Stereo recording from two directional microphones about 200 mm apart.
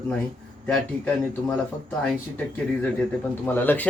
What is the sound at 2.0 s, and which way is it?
Speech, 10° left (ahead or behind).